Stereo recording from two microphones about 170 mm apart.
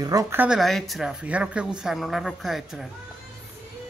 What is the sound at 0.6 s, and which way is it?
Speech, centre (ahead or behind).